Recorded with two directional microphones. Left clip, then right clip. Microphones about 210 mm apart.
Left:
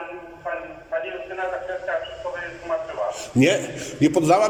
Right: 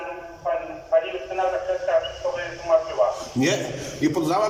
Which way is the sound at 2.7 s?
Centre (ahead or behind).